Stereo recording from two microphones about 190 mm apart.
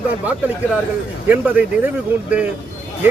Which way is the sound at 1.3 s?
10° right (ahead or behind).